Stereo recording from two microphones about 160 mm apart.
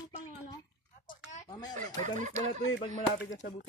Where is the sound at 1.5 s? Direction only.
25° left (ahead or behind).